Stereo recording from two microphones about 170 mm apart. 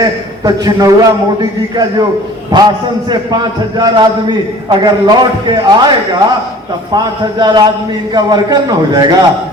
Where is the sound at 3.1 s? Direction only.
25° right (ahead or behind).